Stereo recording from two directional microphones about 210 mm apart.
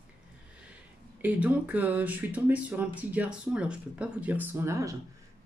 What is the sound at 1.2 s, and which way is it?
Speech, 5° right (ahead or behind).